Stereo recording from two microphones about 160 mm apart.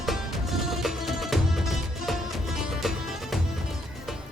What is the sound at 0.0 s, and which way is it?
Music, centre (ahead or behind).